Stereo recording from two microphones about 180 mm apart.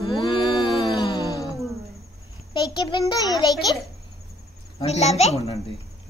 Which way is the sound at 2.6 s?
25° left (ahead or behind).